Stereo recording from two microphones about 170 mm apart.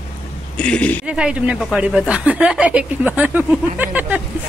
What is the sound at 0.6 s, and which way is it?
Speech, 5° left (ahead or behind).